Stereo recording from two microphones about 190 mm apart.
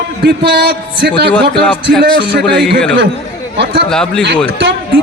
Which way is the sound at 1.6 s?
5° left (ahead or behind).